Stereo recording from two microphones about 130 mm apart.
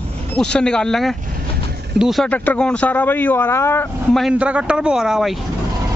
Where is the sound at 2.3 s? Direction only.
10° left (ahead or behind).